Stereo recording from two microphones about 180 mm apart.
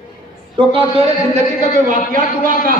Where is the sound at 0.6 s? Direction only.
30° right (ahead or behind).